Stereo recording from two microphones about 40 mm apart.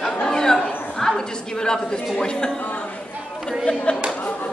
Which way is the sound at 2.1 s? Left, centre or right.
Centre.